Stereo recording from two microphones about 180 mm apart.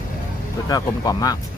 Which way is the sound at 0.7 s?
20° left (ahead or behind).